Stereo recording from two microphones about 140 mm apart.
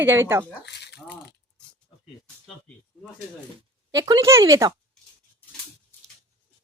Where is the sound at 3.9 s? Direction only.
25° right (ahead or behind).